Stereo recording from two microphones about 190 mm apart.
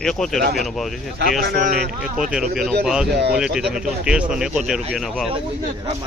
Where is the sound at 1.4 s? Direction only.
55° right (ahead or behind).